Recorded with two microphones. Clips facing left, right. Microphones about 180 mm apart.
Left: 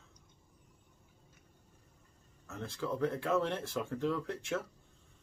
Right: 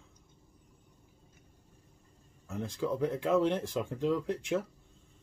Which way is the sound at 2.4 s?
15° right (ahead or behind).